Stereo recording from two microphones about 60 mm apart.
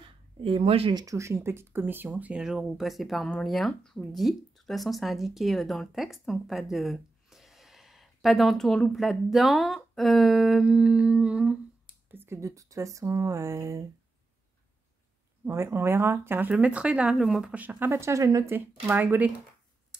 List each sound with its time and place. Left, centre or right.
1.0 s speech: right
2.4 s speech: centre
6.4 s a sound: centre
8.9 s speech: centre
9.9 s humming: centre
12.1 s a sound: right
12.4 s speech: right
15.5 s speech: right
16.6 s speech: centre
17.2 s humming: centre
17.6 s speech: right
18.9 s speech: right